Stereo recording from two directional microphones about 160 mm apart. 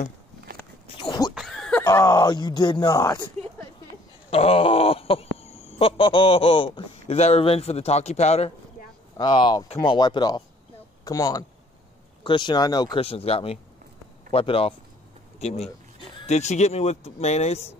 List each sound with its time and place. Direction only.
0.8 s a sound: 30° left (ahead or behind)
1.3 s snicker: centre (ahead or behind)
1.8 s speech: 20° left (ahead or behind)
4.3 s a sound: 35° left (ahead or behind)
5.7 s speech: 35° left (ahead or behind)
9.1 s speech: 25° left (ahead or behind)